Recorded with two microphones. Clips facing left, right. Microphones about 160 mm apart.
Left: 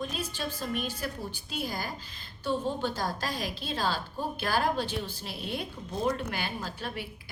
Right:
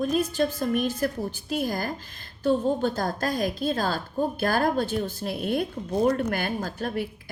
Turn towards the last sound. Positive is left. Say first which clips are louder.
# right 8 dB
turn(degrees=-45)  # may be behind; listen again after turning